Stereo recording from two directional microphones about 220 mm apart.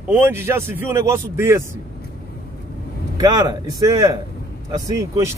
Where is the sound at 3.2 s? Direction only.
15° right (ahead or behind).